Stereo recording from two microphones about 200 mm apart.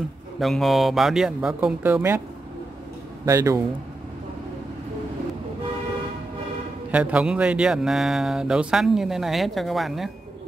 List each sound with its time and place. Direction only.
0.4 s a man's voice: centre (ahead or behind)
3.3 s speech: 15° right (ahead or behind)
6.9 s a man's voice: 5° right (ahead or behind)